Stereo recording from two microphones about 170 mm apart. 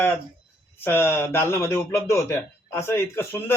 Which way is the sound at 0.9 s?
15° left (ahead or behind).